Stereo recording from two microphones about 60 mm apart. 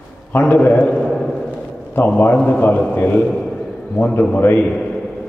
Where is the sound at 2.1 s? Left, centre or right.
Left.